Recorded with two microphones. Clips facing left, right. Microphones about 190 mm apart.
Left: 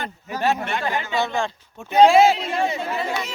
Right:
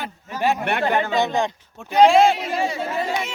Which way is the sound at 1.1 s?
20° right (ahead or behind).